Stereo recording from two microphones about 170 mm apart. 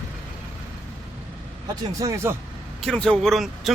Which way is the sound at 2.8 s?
5° left (ahead or behind).